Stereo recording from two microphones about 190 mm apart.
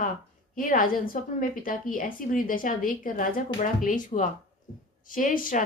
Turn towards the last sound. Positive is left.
turn(degrees=45)  # may be behind; listen again after turning